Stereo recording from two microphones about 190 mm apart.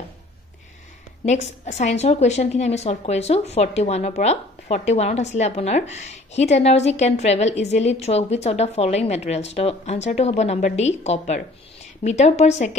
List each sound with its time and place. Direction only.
1.2 s a woman's voice: 35° left (ahead or behind)